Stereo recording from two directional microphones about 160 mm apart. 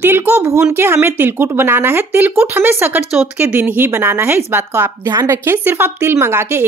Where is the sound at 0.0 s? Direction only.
10° right (ahead or behind).